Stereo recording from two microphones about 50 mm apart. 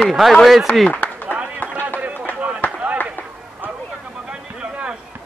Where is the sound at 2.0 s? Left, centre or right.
Right.